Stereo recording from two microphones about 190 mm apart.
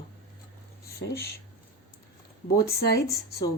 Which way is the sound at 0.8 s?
55° left (ahead or behind).